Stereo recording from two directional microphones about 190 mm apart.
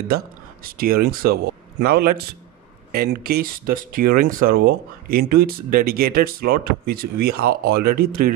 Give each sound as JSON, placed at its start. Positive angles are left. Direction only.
{"t": 0.7, "sound": "speech", "side_deg": -50}